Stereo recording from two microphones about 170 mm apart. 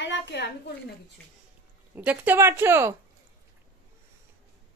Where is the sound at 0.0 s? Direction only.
90° left.